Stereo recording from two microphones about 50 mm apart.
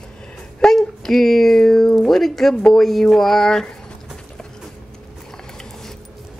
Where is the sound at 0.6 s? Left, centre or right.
Centre.